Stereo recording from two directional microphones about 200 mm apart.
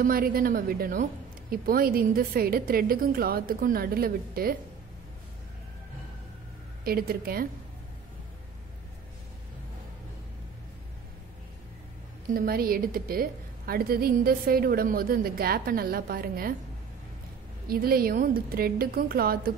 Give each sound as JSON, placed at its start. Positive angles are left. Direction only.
{"t": 0.0, "sound": "a woman's voice", "side_deg": -45}
{"t": 6.8, "sound": "a woman's voice", "side_deg": -50}
{"t": 12.3, "sound": "a woman's voice", "side_deg": -45}
{"t": 17.6, "sound": "a woman's voice", "side_deg": -50}